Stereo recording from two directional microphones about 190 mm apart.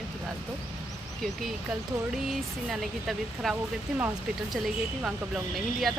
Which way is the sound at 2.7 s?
Centre (ahead or behind).